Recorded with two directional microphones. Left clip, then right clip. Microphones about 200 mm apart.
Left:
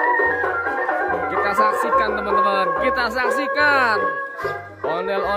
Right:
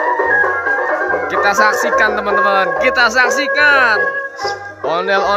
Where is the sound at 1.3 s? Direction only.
10° left (ahead or behind).